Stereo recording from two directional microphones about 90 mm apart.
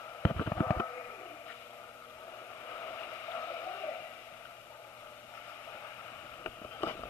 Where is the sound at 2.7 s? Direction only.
30° left (ahead or behind).